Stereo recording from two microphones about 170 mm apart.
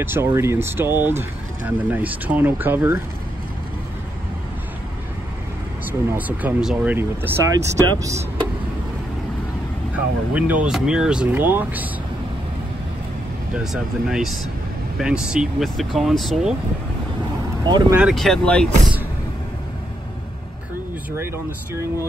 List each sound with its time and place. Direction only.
0.0 s speech: 15° right (ahead or behind)
5.9 s speech: 10° right (ahead or behind)
9.9 s speech: 10° right (ahead or behind)
13.6 s speech: 5° right (ahead or behind)
17.6 s speech: 25° right (ahead or behind)
17.9 s speech: centre (ahead or behind)